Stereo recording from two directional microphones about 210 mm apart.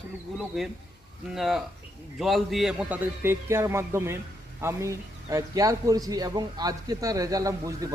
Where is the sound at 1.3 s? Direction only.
Centre (ahead or behind).